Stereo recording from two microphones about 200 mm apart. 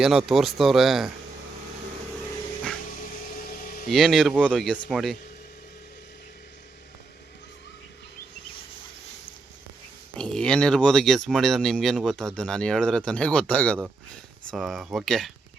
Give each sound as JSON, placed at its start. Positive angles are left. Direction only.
{"t": 0.0, "sound": "speech", "side_deg": 0}
{"t": 3.4, "sound": "vehicle", "side_deg": 45}
{"t": 3.8, "sound": "speech", "side_deg": 0}
{"t": 10.2, "sound": "speech", "side_deg": 5}